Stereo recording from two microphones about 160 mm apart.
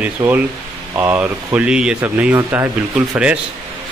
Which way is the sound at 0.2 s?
20° right (ahead or behind).